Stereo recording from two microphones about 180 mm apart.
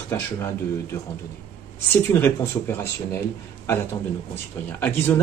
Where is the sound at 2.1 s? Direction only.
10° left (ahead or behind).